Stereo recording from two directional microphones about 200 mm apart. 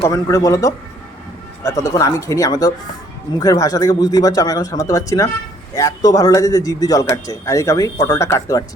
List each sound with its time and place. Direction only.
0.1 s a man's voice: 15° left (ahead or behind)